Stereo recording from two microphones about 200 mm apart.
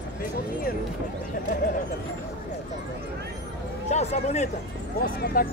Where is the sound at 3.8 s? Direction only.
35° left (ahead or behind).